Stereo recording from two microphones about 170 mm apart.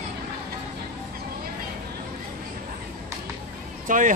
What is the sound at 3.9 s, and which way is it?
Speech, 50° right (ahead or behind).